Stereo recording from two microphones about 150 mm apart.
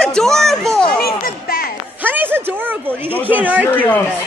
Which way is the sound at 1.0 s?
80° left.